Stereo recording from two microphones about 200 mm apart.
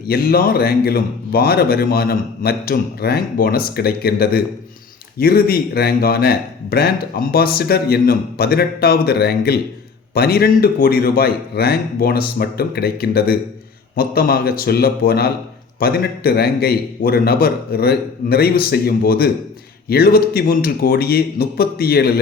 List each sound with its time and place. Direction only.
0.1 s speech: 50° left (ahead or behind)